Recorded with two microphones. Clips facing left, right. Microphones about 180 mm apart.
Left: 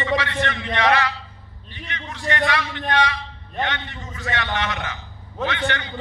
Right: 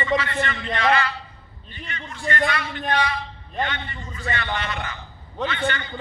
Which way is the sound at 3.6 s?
70° left (ahead or behind).